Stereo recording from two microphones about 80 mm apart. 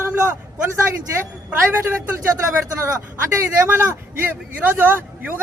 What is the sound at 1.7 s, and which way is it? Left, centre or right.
Speech, right.